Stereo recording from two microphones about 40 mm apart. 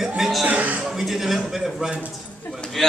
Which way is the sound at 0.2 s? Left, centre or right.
Centre.